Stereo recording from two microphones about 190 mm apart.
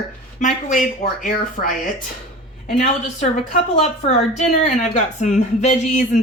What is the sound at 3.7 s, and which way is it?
A woman's voice, 35° left (ahead or behind).